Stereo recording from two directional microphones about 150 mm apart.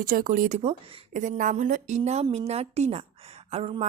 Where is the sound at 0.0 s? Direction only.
70° right (ahead or behind).